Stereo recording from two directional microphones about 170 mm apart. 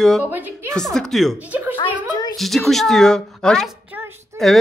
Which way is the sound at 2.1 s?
25° left (ahead or behind).